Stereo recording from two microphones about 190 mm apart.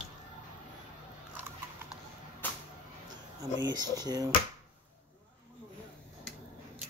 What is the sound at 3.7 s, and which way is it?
Speech, 20° right (ahead or behind).